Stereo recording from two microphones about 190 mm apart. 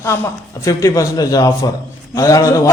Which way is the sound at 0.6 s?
15° left (ahead or behind).